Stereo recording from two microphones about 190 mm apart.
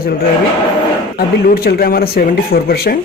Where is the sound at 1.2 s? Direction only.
55° left (ahead or behind).